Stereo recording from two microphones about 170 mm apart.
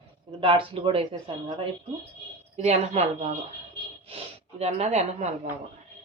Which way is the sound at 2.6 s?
40° right (ahead or behind).